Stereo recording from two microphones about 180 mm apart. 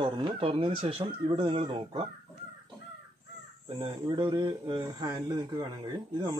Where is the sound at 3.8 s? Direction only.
25° right (ahead or behind).